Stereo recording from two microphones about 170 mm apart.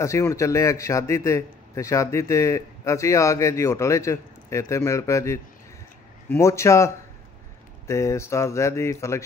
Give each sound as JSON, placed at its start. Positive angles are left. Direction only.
{"t": 0.0, "sound": "a man's voice", "side_deg": 15}